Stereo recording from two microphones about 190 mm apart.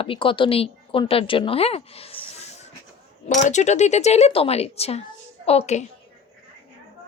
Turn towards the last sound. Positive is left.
turn(degrees=35)  # may be behind; listen again after turning